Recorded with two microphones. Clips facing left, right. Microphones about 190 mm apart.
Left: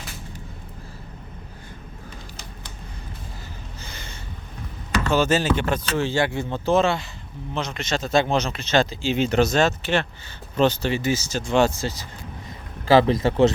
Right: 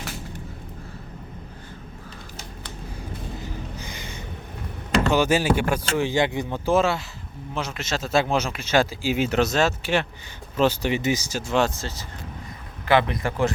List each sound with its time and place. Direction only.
3.4 s a sound: 15° right (ahead or behind)
5.0 s speech: 15° right (ahead or behind)
12.9 s speech: 30° left (ahead or behind)